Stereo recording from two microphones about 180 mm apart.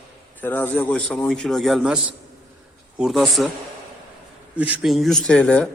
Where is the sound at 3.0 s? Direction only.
Centre (ahead or behind).